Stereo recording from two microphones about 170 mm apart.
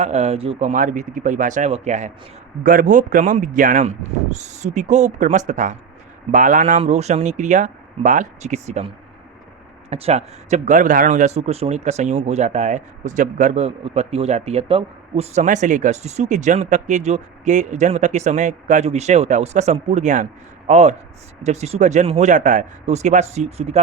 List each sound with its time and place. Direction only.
0.0 s speech: 40° right (ahead or behind)
9.9 s a man's voice: 40° right (ahead or behind)